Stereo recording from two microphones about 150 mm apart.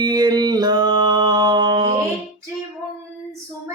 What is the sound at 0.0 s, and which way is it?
Mantra, 25° right (ahead or behind).